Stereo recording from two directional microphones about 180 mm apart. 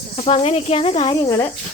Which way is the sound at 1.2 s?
15° left (ahead or behind).